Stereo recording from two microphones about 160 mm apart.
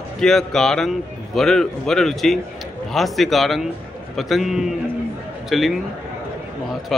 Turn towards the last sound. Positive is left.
turn(degrees=0)  # may be behind; listen again after turning